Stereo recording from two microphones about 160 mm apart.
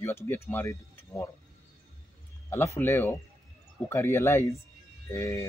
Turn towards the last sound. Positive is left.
turn(degrees=15)  # may be behind; listen again after turning